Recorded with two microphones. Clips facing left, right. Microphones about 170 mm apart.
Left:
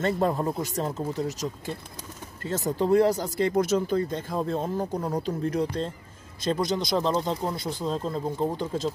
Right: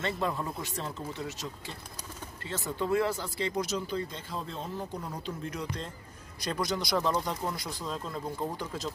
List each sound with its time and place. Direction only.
0.0 s speech: 45° left (ahead or behind); by 8.9 s 25° left (ahead or behind)